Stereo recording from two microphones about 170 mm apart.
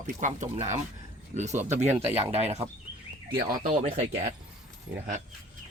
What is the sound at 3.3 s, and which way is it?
Speech, 55° right (ahead or behind).